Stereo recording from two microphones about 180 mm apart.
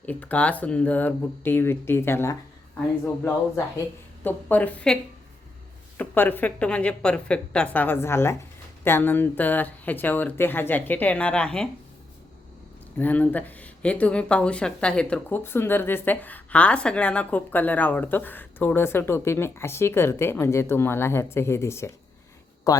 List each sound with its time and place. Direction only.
0.0 s speech: 10° left (ahead or behind)
4.2 s speech: 10° left (ahead or behind)
6.0 s speech: 10° left (ahead or behind)
13.0 s speech: 10° left (ahead or behind)